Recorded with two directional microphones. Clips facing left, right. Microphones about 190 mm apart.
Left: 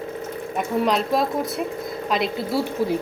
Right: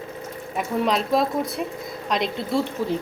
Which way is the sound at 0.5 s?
Centre (ahead or behind).